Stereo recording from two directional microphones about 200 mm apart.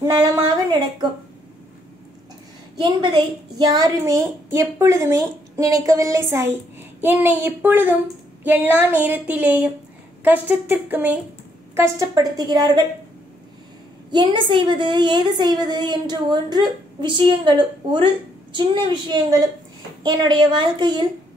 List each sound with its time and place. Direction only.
0.0 s speech: 15° right (ahead or behind)
2.8 s a woman's voice: 25° right (ahead or behind)
14.1 s a woman's voice: 25° right (ahead or behind)